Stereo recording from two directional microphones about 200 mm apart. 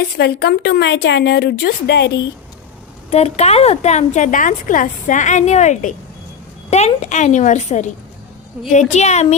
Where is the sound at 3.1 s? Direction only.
30° left (ahead or behind).